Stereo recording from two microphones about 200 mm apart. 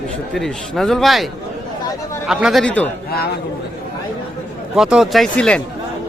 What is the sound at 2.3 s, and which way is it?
Speech, 5° right (ahead or behind).